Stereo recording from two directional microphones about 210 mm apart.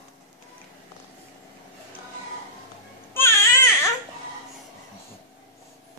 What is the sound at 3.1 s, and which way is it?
Baby cry, 10° left (ahead or behind).